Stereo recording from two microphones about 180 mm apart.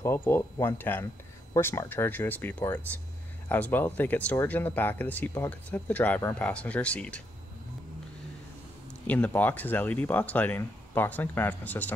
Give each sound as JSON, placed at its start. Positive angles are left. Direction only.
{"t": 0.0, "sound": "speech", "side_deg": 15}
{"t": 9.0, "sound": "speech", "side_deg": 10}